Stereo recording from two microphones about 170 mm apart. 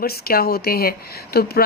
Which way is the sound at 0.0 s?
65° left (ahead or behind).